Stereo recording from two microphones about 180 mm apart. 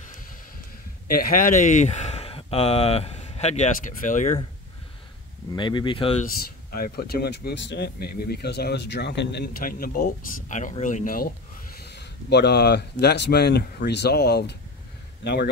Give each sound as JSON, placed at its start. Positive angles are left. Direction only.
{"t": 1.0, "sound": "speech", "side_deg": 55}
{"t": 5.6, "sound": "speech", "side_deg": 25}
{"t": 6.2, "sound": "speech", "side_deg": 55}
{"t": 11.8, "sound": "a man's voice", "side_deg": 70}